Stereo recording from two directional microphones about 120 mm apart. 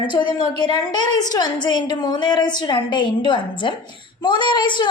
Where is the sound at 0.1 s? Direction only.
40° left (ahead or behind).